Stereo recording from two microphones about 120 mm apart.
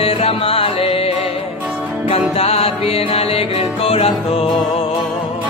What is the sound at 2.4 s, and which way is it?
Music, 55° left (ahead or behind).